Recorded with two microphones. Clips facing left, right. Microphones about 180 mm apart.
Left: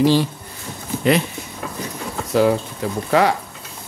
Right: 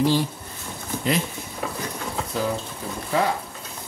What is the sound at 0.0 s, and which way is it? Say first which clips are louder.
Speech: left 5 dB; 90° left.